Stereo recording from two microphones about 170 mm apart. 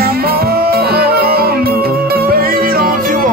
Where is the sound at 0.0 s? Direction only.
65° right (ahead or behind).